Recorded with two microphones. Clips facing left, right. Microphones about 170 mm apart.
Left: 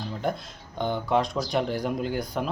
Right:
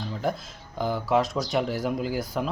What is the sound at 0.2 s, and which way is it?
Speech, centre (ahead or behind).